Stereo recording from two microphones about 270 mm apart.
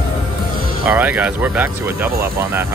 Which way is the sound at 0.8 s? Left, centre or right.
Centre.